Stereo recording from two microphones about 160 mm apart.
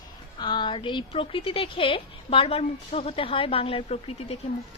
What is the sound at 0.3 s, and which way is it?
Speech, 30° left (ahead or behind).